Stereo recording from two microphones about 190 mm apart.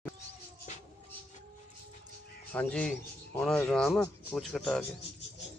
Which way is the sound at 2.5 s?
5° left (ahead or behind).